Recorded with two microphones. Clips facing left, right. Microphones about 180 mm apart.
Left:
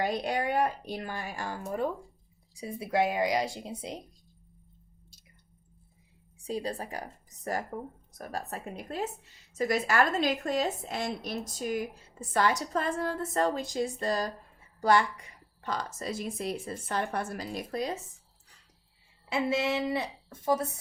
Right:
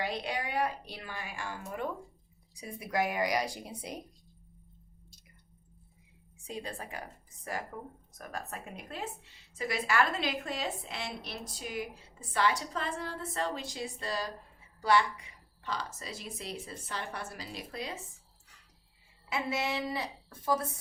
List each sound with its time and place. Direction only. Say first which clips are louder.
0.0 s a woman's voice: left 6 dB; 45° left (ahead or behind); by 4.0 s 25° left (ahead or behind)
6.5 s a woman's voice: left 7 dB; 35° left (ahead or behind)
19.3 s speech: left 5 dB; 25° left (ahead or behind)